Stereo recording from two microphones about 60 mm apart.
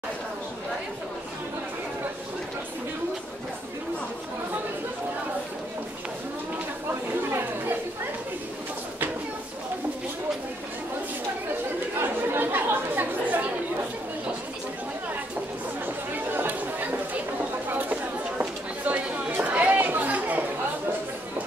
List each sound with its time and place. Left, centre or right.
6.9 s chatter: right
12.0 s chatter: right
15.8 s chatter: right
19.4 s a sound: right
19.8 s chatter: right